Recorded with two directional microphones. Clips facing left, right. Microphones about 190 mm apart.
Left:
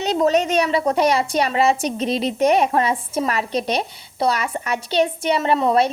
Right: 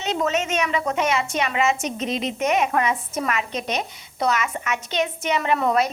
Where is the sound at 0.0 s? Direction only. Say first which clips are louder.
Left 6 dB; 35° left (ahead or behind).